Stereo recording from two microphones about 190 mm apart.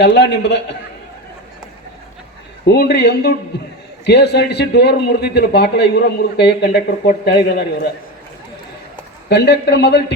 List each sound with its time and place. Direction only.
0.0 s a man's voice: 65° left (ahead or behind)
2.6 s a man's voice: 55° left (ahead or behind)
9.3 s a man's voice: 60° left (ahead or behind)